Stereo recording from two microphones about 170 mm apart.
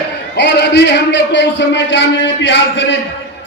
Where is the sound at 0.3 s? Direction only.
80° left.